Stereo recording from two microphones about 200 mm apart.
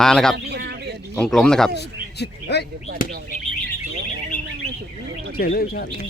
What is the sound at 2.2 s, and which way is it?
Speech, 55° left (ahead or behind).